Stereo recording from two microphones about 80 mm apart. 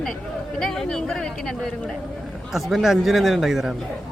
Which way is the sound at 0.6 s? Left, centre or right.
Centre.